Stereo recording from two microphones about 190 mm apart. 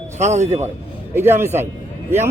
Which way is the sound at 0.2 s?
35° right (ahead or behind).